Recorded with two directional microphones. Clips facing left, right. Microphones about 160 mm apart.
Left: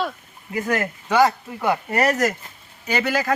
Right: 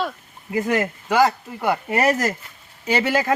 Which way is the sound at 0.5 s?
20° right (ahead or behind).